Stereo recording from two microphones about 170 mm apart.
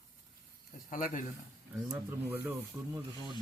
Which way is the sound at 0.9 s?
50° left (ahead or behind).